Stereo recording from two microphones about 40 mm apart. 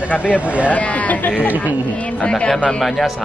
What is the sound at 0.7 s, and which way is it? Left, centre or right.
Speech, left.